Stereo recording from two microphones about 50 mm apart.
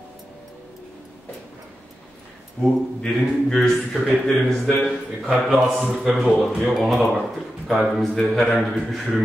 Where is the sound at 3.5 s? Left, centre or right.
Centre.